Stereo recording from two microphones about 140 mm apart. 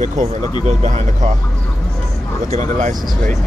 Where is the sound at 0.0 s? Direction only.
65° right (ahead or behind).